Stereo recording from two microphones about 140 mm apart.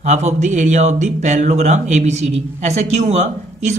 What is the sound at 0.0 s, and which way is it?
Speech, 55° right (ahead or behind).